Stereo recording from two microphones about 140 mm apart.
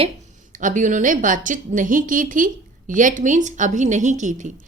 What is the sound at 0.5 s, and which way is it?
A woman's voice, 65° right (ahead or behind).